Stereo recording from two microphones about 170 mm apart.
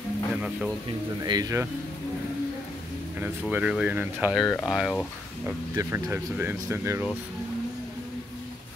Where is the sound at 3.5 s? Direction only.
5° right (ahead or behind).